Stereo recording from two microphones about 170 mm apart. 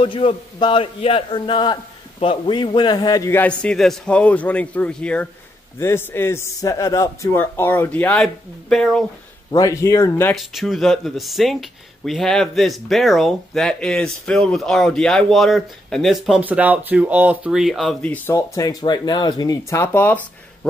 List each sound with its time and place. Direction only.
0.0 s a man's voice: 30° left (ahead or behind); by 9.0 s 5° left (ahead or behind)
9.5 s a man's voice: 20° left (ahead or behind)
10.3 s speech: centre (ahead or behind)